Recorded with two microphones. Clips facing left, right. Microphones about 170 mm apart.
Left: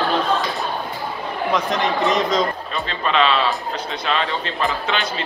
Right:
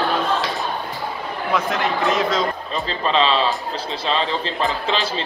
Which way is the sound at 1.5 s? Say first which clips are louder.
Even; centre (ahead or behind).